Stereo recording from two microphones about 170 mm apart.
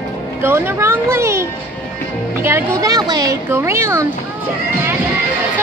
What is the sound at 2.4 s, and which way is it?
A woman's voice, 15° right (ahead or behind).